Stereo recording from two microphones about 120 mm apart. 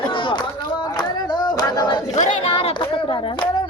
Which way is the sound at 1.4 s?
35° left (ahead or behind).